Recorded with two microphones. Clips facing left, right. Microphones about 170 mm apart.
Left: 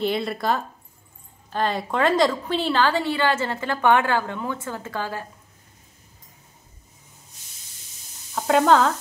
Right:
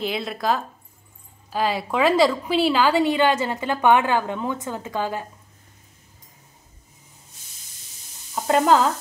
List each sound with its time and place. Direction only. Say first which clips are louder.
0.0 s a woman's voice: left 2 dB; centre (ahead or behind); by 5.2 s 15° right (ahead or behind)
8.4 s stir: even; 5° right (ahead or behind)